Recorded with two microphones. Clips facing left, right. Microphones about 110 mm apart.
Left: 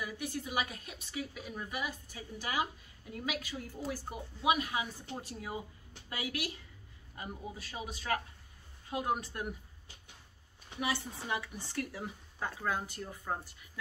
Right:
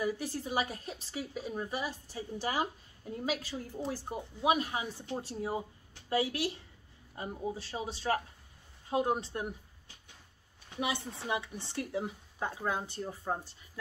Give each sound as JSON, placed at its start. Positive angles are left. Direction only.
{"t": 0.0, "sound": "speech", "side_deg": -35}
{"t": 10.8, "sound": "speech", "side_deg": -20}